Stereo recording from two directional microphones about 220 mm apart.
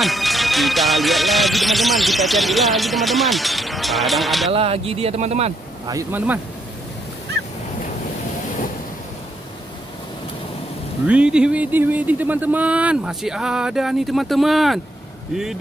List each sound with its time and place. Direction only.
0.0 s speech: centre (ahead or behind)
4.5 s speech: 25° right (ahead or behind)
5.9 s speech: 10° right (ahead or behind)
11.1 s speech: 5° right (ahead or behind)